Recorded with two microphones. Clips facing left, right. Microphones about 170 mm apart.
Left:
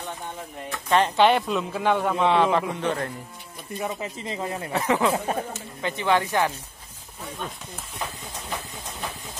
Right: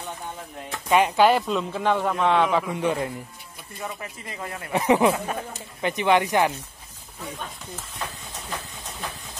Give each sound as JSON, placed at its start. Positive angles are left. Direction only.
{"t": 0.7, "sound": "speech", "side_deg": -10}
{"t": 2.8, "sound": "speech", "side_deg": -10}
{"t": 3.8, "sound": "a man's voice", "side_deg": 25}
{"t": 4.7, "sound": "speech", "side_deg": -15}
{"t": 5.1, "sound": "speech", "side_deg": 30}
{"t": 5.8, "sound": "speech", "side_deg": -15}